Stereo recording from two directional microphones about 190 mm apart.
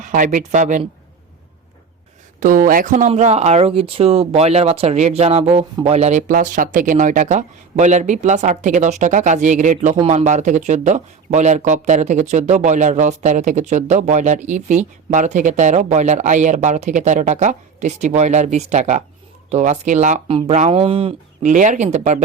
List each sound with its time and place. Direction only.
0.0 s speech: 40° right (ahead or behind)
2.4 s speech: 45° right (ahead or behind)